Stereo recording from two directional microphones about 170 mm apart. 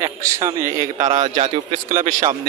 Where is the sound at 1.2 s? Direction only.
45° right (ahead or behind).